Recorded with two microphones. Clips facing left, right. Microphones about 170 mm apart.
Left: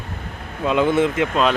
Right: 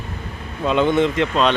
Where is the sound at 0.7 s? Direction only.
5° left (ahead or behind).